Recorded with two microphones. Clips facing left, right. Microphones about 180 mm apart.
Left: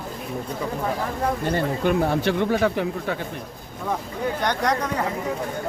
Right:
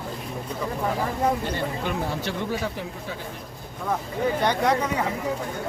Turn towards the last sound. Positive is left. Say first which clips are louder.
# right 1 dB
turn(degrees=-10)  # may be behind; listen again after turning